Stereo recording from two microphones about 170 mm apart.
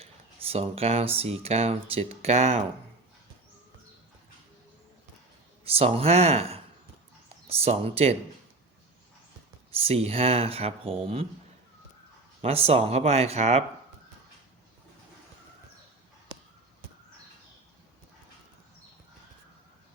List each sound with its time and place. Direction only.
0.0 s speech: 35° right (ahead or behind)
5.6 s speech: 35° right (ahead or behind)
9.8 s speech: 35° right (ahead or behind)
12.4 s speech: 35° right (ahead or behind)